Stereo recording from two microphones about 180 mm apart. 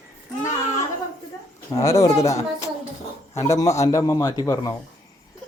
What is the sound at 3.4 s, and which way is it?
A man's voice, 15° left (ahead or behind).